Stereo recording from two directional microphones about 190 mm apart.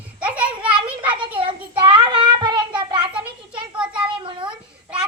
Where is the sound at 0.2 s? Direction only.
5° right (ahead or behind).